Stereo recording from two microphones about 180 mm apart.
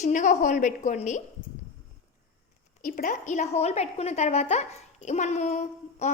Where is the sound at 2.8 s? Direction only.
50° left (ahead or behind).